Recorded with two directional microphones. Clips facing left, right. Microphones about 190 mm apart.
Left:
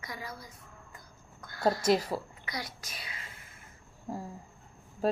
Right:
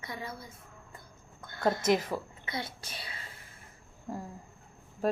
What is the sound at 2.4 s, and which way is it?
Whispering, 25° right (ahead or behind).